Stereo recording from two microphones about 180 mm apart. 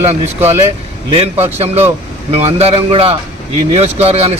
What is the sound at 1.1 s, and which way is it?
A man's voice, 35° right (ahead or behind).